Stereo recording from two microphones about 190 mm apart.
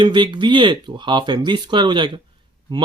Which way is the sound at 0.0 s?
25° right (ahead or behind).